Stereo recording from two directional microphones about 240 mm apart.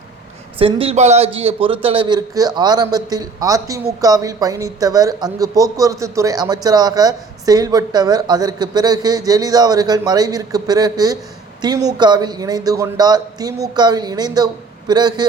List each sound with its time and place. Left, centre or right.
0.6 s a man's voice: right